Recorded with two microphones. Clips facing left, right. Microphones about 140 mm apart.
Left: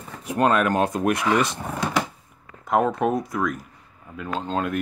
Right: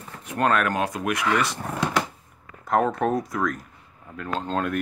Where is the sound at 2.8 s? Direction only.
5° left (ahead or behind).